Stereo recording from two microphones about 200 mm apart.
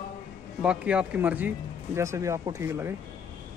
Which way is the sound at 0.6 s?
5° right (ahead or behind).